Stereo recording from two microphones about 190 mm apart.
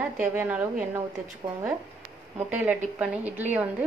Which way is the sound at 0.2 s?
10° right (ahead or behind).